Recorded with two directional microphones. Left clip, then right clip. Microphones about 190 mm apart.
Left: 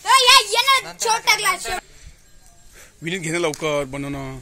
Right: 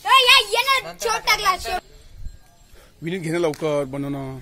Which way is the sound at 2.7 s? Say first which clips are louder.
Left 2 dB; 15° right (ahead or behind).